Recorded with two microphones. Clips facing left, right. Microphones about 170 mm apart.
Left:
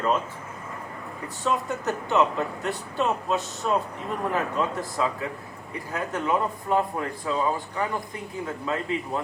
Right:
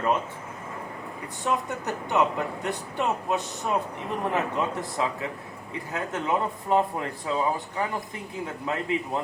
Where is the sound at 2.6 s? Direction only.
15° right (ahead or behind).